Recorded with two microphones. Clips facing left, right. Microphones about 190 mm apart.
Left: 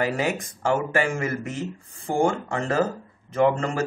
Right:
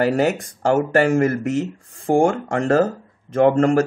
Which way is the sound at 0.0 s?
45° right (ahead or behind).